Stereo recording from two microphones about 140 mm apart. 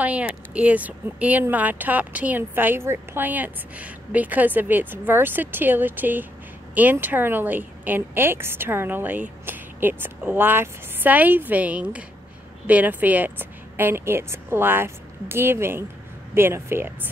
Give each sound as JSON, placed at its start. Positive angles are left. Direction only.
{"t": 0.0, "sound": "speech", "side_deg": -10}